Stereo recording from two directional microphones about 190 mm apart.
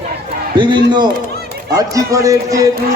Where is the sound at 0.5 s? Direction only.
25° right (ahead or behind).